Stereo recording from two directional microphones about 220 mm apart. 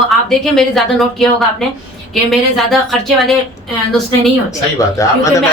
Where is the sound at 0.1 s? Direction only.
Centre (ahead or behind).